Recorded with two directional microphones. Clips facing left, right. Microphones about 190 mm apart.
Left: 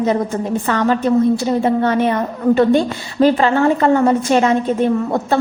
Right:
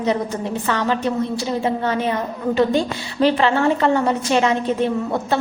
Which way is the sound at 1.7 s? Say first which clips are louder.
Left 5 dB; 55° left (ahead or behind).